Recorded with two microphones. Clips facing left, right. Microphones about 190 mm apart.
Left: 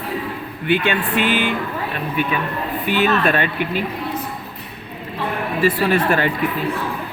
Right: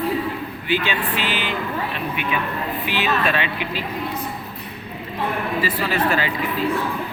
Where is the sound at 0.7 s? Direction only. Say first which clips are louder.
Left 4 dB; 55° left (ahead or behind).